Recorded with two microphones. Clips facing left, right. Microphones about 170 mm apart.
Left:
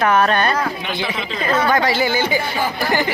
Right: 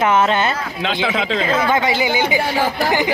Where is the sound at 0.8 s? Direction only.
90° right.